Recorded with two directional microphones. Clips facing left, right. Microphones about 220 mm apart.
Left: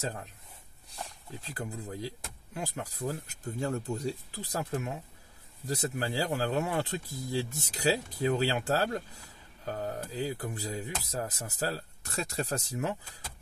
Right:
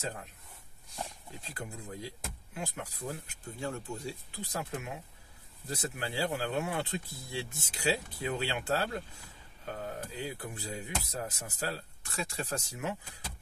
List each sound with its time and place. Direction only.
1.5 s speech: 35° left (ahead or behind)